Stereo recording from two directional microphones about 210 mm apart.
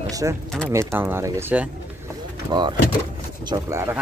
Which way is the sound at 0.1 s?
15° right (ahead or behind).